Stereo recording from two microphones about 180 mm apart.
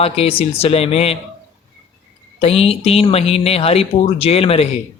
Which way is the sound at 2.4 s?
35° left (ahead or behind).